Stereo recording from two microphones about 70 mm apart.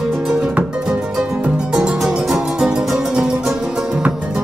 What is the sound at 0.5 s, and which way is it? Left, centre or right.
Music, centre.